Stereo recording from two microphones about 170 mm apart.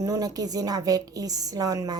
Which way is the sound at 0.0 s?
20° right (ahead or behind).